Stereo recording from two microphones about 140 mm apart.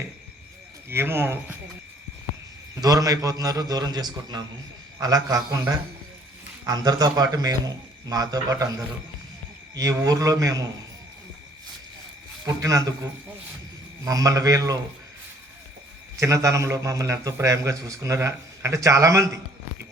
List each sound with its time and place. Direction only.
0.9 s speech: 15° right (ahead or behind)
2.8 s a man's voice: 25° right (ahead or behind)
12.5 s a man's voice: 25° right (ahead or behind)
16.1 s a man's voice: 20° right (ahead or behind)